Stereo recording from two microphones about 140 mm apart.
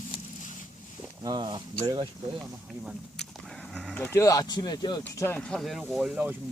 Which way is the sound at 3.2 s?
5° left (ahead or behind).